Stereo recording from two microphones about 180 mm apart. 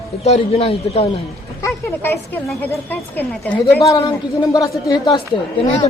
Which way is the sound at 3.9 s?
20° left (ahead or behind).